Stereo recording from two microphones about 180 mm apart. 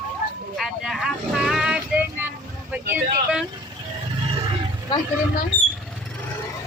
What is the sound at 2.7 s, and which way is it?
Speech, 5° right (ahead or behind).